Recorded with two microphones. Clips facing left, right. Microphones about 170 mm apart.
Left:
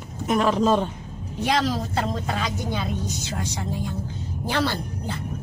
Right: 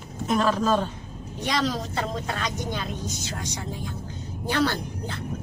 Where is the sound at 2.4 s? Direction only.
5° left (ahead or behind).